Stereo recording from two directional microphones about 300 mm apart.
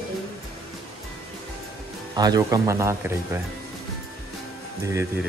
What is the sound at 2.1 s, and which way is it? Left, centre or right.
Speech, centre.